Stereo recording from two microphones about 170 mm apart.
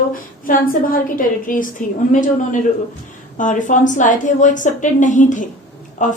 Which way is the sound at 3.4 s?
50° left (ahead or behind).